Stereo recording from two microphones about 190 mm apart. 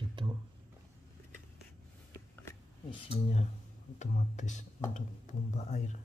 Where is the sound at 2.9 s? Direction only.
30° left (ahead or behind).